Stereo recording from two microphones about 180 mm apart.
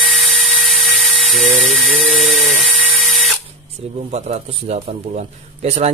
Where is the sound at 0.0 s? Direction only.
Centre (ahead or behind).